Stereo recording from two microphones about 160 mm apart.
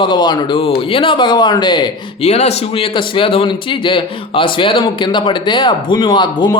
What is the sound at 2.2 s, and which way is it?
A man's voice, 40° left (ahead or behind).